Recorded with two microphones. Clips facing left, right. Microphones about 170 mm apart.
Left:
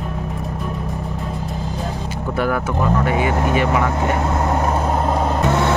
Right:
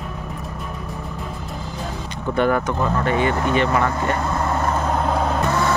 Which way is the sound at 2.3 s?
5° left (ahead or behind).